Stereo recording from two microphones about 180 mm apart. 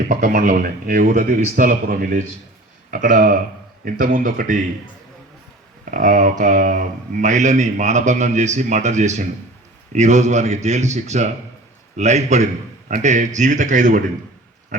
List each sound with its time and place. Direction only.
0.1 s speech: 50° right (ahead or behind)
5.8 s speech: 45° right (ahead or behind)
14.7 s pig: 45° right (ahead or behind)